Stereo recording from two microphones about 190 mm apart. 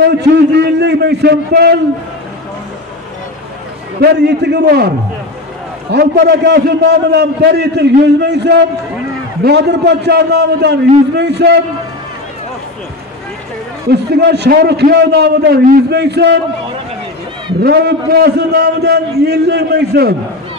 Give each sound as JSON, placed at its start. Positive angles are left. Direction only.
{"t": 0.0, "sound": "a man's voice", "side_deg": -60}
{"t": 4.0, "sound": "a man's voice", "side_deg": -60}
{"t": 13.8, "sound": "a man's voice", "side_deg": -60}
{"t": 17.6, "sound": "a man's voice", "side_deg": -55}